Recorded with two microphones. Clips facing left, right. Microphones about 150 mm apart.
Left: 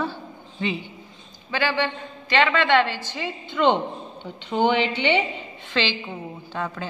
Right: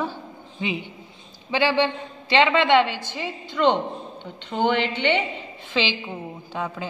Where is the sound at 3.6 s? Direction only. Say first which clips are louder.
Even; 5° left (ahead or behind).